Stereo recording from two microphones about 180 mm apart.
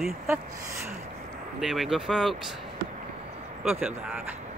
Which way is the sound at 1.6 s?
Centre (ahead or behind).